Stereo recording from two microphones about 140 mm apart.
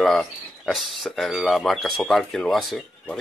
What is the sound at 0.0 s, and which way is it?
Speech, centre (ahead or behind).